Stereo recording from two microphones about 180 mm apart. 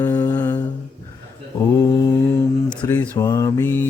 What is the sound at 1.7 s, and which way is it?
Mantra, 20° left (ahead or behind).